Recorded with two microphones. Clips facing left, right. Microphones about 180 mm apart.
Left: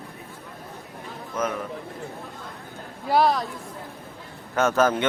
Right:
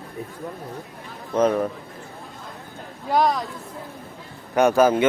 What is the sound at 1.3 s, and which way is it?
Speech, 35° right (ahead or behind).